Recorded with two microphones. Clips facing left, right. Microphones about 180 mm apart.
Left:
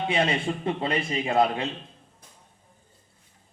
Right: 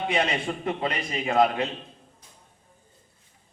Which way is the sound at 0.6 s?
30° left (ahead or behind).